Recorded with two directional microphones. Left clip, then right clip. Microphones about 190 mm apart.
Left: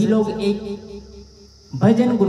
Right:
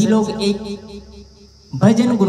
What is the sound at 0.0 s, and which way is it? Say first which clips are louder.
Speech: right 2 dB; 40° right (ahead or behind).